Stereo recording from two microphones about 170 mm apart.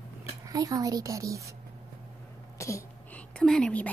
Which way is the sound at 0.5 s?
20° right (ahead or behind).